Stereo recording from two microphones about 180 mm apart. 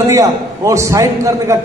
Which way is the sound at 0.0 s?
15° right (ahead or behind).